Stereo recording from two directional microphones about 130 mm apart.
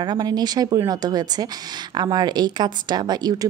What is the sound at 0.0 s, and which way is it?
A woman's voice, 35° right (ahead or behind).